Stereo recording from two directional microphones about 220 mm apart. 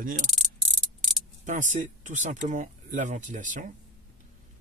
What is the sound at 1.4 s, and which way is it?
Speech, 35° right (ahead or behind).